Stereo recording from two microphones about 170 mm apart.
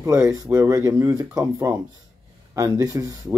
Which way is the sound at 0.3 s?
20° right (ahead or behind).